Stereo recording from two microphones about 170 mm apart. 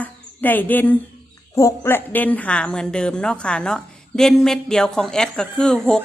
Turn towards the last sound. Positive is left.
turn(degrees=5)  # may be behind; listen again after turning